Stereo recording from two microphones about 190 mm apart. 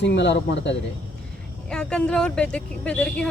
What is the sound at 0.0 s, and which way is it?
Speech, 65° left (ahead or behind).